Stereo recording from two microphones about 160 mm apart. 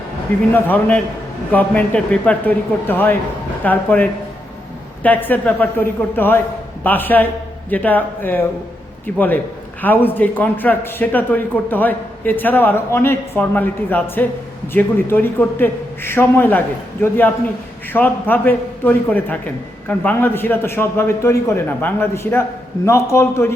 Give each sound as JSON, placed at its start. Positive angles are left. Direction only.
{"t": 0.5, "sound": "a man's voice", "side_deg": 10}